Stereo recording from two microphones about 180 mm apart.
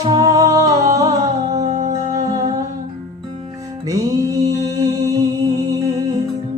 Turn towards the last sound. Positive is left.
turn(degrees=-20)  # may be behind; listen again after turning